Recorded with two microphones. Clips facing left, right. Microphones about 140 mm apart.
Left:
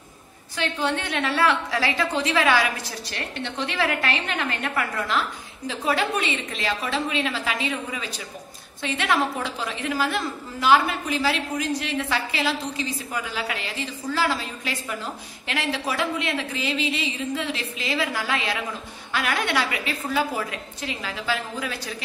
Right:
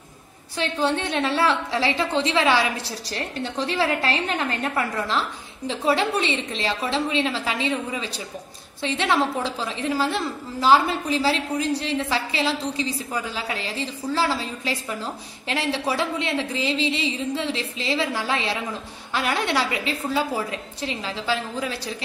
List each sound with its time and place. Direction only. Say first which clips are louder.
0.6 s a woman's voice: right 2 dB; 30° right (ahead or behind)